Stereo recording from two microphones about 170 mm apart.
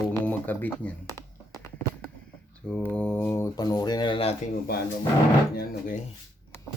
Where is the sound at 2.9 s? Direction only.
10° left (ahead or behind); by 4.3 s 30° left (ahead or behind).